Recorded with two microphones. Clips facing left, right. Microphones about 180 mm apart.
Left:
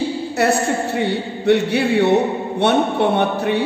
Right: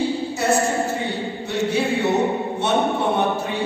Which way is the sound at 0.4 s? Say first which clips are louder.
Left 3 dB; 65° left (ahead or behind).